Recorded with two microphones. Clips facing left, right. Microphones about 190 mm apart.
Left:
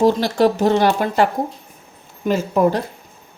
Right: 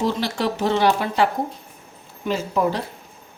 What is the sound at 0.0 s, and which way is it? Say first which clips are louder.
Speech: left 8 dB; 45° left (ahead or behind).